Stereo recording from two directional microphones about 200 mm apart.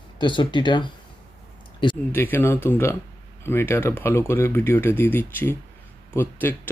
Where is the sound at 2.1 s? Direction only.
10° left (ahead or behind).